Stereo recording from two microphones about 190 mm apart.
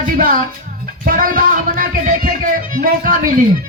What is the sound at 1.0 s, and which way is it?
Speech, 50° right (ahead or behind).